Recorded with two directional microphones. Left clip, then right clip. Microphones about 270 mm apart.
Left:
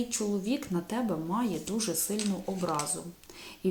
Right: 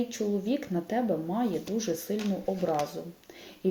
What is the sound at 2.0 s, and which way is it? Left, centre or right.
Speech, right.